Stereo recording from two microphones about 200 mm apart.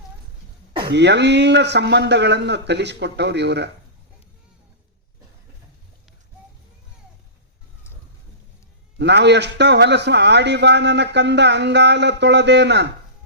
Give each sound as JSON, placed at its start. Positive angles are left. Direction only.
{"t": 0.9, "sound": "a man's voice", "side_deg": -60}
{"t": 9.0, "sound": "a man's voice", "side_deg": -60}